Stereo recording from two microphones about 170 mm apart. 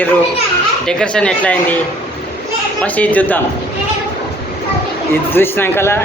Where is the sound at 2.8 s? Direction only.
10° left (ahead or behind).